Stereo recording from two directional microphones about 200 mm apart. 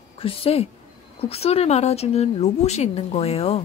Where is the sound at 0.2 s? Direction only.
30° left (ahead or behind).